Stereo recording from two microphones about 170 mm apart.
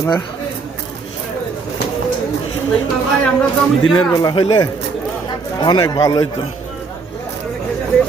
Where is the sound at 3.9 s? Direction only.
20° left (ahead or behind).